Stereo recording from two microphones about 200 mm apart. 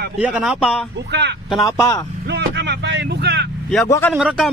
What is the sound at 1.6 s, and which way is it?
Speech, 15° left (ahead or behind).